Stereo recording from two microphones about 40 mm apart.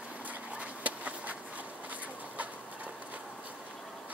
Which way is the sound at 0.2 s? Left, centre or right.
Right.